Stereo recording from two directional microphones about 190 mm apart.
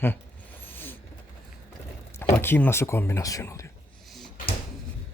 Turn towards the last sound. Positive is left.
turn(degrees=0)  # may be behind; listen again after turning